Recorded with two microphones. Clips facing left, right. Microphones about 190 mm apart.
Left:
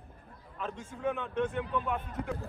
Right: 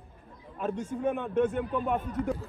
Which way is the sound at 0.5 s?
55° right (ahead or behind).